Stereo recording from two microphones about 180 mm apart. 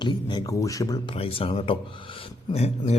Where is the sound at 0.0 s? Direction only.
25° left (ahead or behind).